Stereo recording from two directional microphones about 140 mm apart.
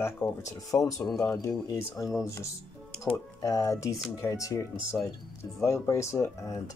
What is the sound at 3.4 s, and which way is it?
Speech, 25° left (ahead or behind).